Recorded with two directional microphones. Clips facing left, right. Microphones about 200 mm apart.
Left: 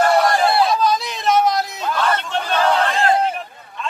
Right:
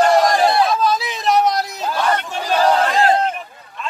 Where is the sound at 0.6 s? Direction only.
Centre (ahead or behind).